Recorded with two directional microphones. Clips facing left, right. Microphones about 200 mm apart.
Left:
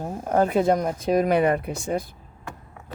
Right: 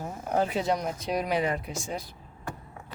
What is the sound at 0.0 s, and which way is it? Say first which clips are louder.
Speech: left 6 dB; 45° left (ahead or behind).